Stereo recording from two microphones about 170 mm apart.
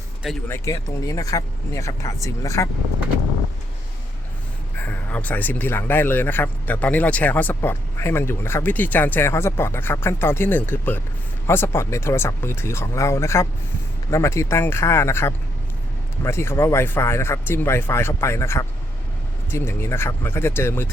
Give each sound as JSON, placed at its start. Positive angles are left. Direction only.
{"t": 0.4, "sound": "speech", "side_deg": 15}
{"t": 4.8, "sound": "speech", "side_deg": 10}